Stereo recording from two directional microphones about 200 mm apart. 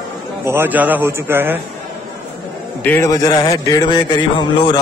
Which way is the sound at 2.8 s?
10° left (ahead or behind).